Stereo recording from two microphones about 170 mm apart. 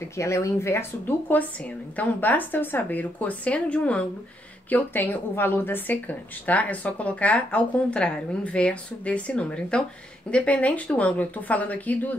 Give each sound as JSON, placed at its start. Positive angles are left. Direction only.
{"t": 0.2, "sound": "speech", "side_deg": 15}